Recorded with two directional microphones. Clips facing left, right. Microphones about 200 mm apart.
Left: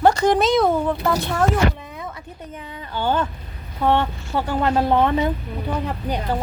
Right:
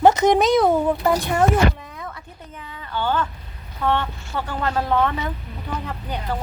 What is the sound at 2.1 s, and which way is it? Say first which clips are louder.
A woman's voice: left 4 dB; 20° left (ahead or behind).